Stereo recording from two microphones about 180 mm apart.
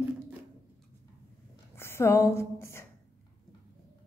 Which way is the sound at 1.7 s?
15° left (ahead or behind).